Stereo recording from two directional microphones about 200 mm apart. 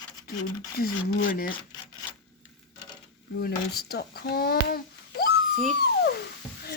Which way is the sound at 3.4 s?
50° left (ahead or behind).